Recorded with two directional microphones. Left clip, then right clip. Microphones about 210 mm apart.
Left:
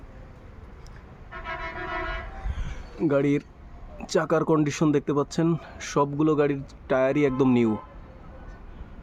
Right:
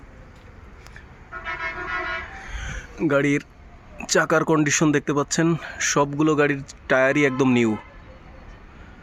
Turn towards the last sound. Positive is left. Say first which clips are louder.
# right 2 dB
turn(degrees=0)  # may be behind; listen again after turning